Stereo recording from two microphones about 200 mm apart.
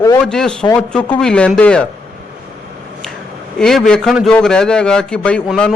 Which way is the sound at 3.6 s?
Centre (ahead or behind).